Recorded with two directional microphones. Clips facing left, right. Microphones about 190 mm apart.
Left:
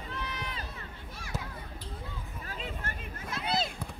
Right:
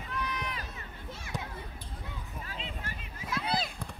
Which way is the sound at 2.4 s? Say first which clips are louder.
Left 4 dB; 45° left (ahead or behind).